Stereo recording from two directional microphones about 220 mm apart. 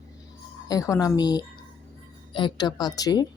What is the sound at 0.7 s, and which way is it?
A woman's voice, 15° left (ahead or behind).